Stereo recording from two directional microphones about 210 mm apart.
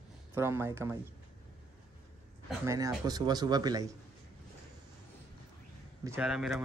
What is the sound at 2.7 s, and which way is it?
Speech, 15° right (ahead or behind).